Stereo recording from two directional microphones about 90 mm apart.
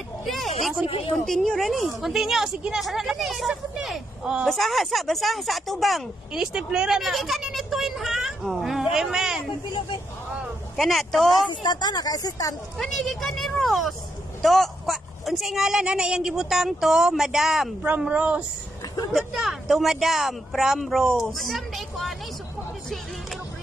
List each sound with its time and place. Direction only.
0.3 s vehicle: centre (ahead or behind)
0.8 s speech: 90° left
1.2 s speech: 5° left (ahead or behind)
9.7 s speech: 65° left (ahead or behind)
10.8 s speech: centre (ahead or behind)
11.6 s speech: 50° left (ahead or behind)
12.7 s speech: 5° left (ahead or behind)
17.8 s speech: 15° right (ahead or behind)
19.1 s speech: centre (ahead or behind)